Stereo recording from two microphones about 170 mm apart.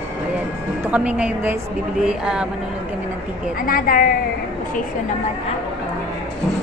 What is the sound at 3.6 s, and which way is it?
Speech, 55° left (ahead or behind).